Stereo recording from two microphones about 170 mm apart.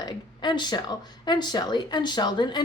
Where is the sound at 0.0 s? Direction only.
25° left (ahead or behind).